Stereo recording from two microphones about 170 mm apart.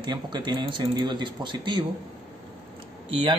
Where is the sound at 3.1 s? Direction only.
30° right (ahead or behind).